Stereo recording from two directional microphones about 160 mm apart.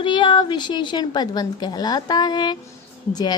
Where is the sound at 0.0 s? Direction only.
30° left (ahead or behind).